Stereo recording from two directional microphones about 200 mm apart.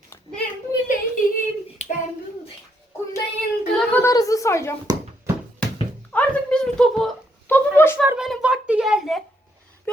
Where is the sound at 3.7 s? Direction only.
10° left (ahead or behind).